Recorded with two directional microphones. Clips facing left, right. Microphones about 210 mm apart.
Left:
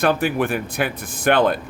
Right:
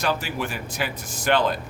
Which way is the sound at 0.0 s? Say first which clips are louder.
Left 7 dB; 55° left (ahead or behind).